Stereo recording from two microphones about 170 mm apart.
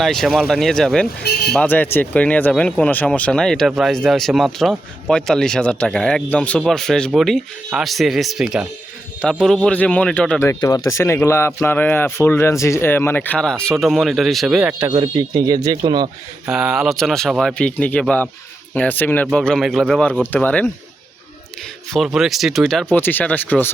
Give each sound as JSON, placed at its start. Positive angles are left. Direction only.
{"t": 0.0, "sound": "speech", "side_deg": 0}
{"t": 1.2, "sound": "speech", "side_deg": 70}
{"t": 1.5, "sound": "speech", "side_deg": 10}
{"t": 14.8, "sound": "speech", "side_deg": -30}
{"t": 16.5, "sound": "speech", "side_deg": -5}
{"t": 21.9, "sound": "speech", "side_deg": 0}